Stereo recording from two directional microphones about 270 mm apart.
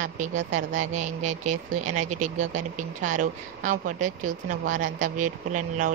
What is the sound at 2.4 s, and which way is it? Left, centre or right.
Speech, right.